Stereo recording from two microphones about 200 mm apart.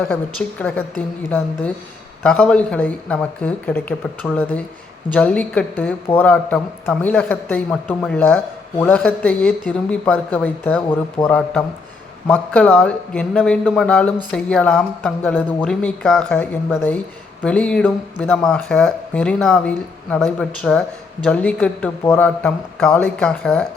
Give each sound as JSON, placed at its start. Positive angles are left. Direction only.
{"t": 0.6, "sound": "speech", "side_deg": 10}